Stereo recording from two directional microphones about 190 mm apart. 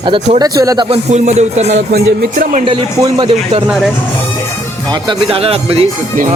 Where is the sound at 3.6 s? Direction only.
5° right (ahead or behind).